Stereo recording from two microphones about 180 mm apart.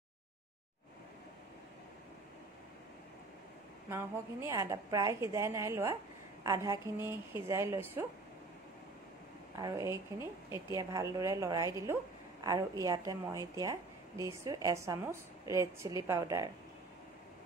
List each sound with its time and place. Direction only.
3.9 s a woman's voice: 15° right (ahead or behind)
9.6 s a woman's voice: 20° right (ahead or behind)